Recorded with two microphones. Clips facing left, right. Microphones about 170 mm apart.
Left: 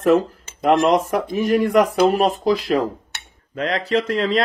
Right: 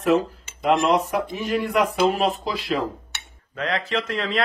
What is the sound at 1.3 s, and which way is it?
Speech, 45° left (ahead or behind).